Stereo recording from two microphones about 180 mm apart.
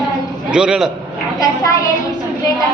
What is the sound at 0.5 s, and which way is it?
Speech, 5° right (ahead or behind).